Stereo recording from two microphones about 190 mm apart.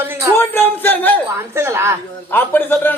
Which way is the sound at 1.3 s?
15° right (ahead or behind).